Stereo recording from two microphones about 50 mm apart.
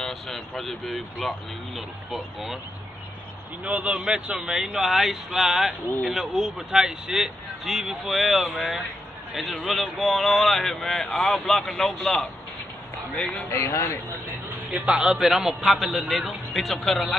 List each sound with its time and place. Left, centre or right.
0.0 s a man's voice: centre
3.6 s speech: right
4.1 s a man's voice: centre
13.5 s speech: left
14.9 s speech: right
15.1 s a man's voice: centre